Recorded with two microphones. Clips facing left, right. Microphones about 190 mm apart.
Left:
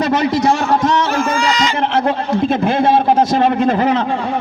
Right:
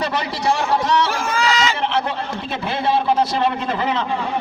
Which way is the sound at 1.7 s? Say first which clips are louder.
Left 6 dB; 50° left (ahead or behind).